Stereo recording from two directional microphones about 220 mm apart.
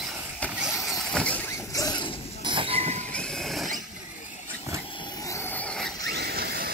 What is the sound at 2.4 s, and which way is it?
Train, 20° right (ahead or behind).